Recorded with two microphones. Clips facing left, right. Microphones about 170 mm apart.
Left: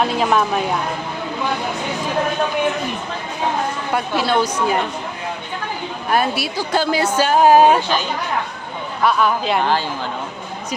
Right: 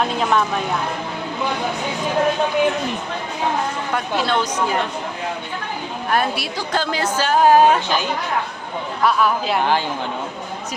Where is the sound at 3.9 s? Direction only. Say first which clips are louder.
Left 3 dB; 10° left (ahead or behind).